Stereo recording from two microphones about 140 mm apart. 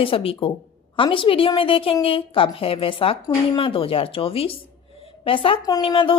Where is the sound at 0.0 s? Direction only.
40° left (ahead or behind).